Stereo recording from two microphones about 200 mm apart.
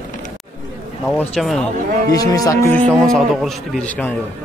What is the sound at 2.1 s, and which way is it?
Speech, 15° left (ahead or behind).